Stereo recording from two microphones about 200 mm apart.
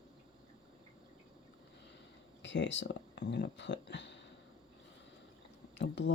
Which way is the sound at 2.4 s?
65° left (ahead or behind).